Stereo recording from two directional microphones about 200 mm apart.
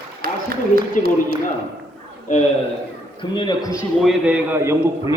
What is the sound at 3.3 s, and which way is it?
Speech, 25° left (ahead or behind).